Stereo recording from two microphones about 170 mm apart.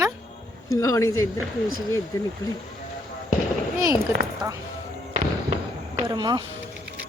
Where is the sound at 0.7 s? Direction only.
20° left (ahead or behind).